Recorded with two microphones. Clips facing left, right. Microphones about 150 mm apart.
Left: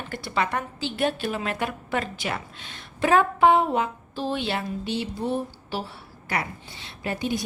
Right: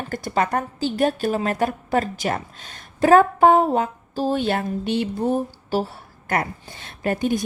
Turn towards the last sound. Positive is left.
turn(degrees=-50)  # may be behind; listen again after turning